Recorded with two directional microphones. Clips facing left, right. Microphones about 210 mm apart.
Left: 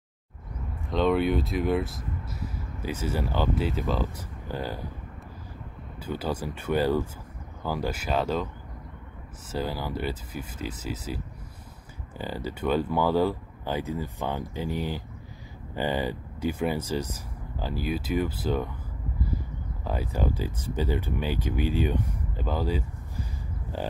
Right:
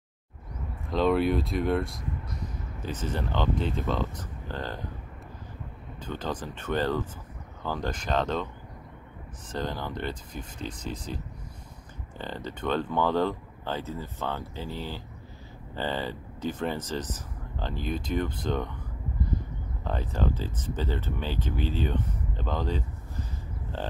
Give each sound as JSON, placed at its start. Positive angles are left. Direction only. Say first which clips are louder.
{"t": 0.8, "sound": "speech", "louder": "even", "side_deg": 0}
{"t": 6.0, "sound": "speech", "louder": "left 3 dB", "side_deg": 10}
{"t": 9.5, "sound": "speech", "louder": "left 2 dB", "side_deg": 5}
{"t": 19.8, "sound": "speech", "louder": "left 1 dB", "side_deg": 10}